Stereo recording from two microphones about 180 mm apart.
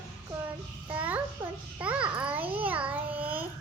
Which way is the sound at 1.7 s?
10° right (ahead or behind).